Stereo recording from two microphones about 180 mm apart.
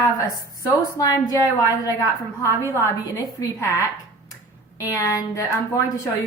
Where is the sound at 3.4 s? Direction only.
20° left (ahead or behind).